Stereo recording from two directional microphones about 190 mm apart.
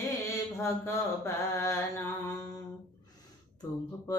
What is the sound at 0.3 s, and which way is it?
Mantra, 15° left (ahead or behind).